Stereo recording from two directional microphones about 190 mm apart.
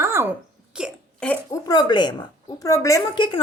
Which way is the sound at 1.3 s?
20° left (ahead or behind).